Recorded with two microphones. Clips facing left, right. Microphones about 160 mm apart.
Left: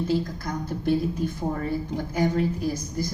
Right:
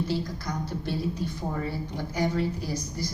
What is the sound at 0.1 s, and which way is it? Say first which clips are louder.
A woman's voice: left 4 dB; 50° left (ahead or behind).